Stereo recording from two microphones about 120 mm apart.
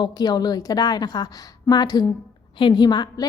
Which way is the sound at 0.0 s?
35° left (ahead or behind).